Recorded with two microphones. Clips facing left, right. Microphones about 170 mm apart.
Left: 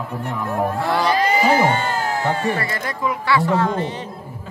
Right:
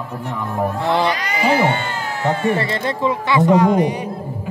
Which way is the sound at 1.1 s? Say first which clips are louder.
Left 7 dB; 30° left (ahead or behind).